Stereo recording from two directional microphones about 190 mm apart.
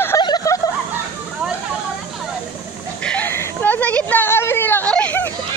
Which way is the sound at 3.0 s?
5° left (ahead or behind).